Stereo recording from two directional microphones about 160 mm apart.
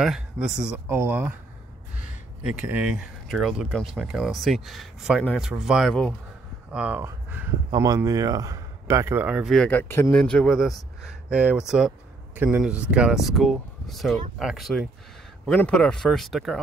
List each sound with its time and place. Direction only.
0.0 s speech: 5° right (ahead or behind)
7.7 s a man's voice: 25° right (ahead or behind)
9.5 s speech: 5° left (ahead or behind)